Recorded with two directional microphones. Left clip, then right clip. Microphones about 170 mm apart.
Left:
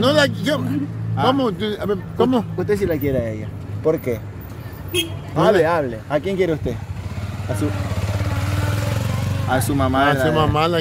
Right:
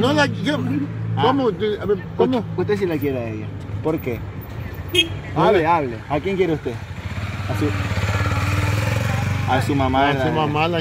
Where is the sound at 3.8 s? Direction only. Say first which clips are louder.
Left 4 dB; 5° left (ahead or behind).